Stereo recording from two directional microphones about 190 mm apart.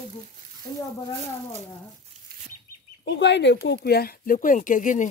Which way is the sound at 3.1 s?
65° left (ahead or behind).